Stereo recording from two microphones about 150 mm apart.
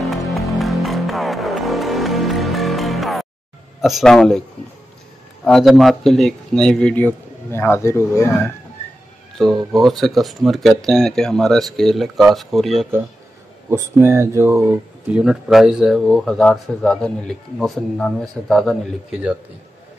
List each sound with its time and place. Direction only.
0.0 s music: centre (ahead or behind)
3.8 s speech: centre (ahead or behind)
5.4 s speech: centre (ahead or behind); by 8.3 s 20° left (ahead or behind)
9.4 s speech: centre (ahead or behind)
13.7 s speech: 20° right (ahead or behind)
15.0 s speech: 5° right (ahead or behind)